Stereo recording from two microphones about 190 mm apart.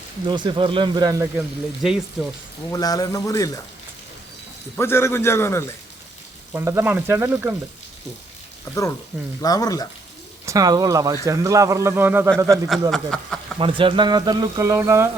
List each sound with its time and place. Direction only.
0.3 s speech: 25° right (ahead or behind)
1.4 s speech: 5° right (ahead or behind)
2.7 s speech: 20° left (ahead or behind)
4.8 s a man's voice: 15° left (ahead or behind)
6.5 s a man's voice: 15° right (ahead or behind)
8.7 s a man's voice: 15° left (ahead or behind)
10.4 s a man's voice: 20° right (ahead or behind)
12.9 s speech: 5° left (ahead or behind)
13.6 s speech: 25° right (ahead or behind)